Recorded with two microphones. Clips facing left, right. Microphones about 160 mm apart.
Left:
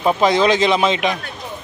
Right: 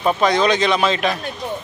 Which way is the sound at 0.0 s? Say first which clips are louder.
Left 2 dB; 20° left (ahead or behind).